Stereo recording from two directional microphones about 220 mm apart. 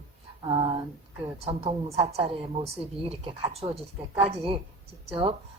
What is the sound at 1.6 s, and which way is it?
A woman's voice, 25° right (ahead or behind).